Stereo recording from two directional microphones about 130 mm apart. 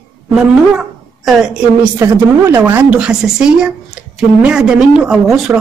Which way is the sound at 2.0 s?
20° right (ahead or behind).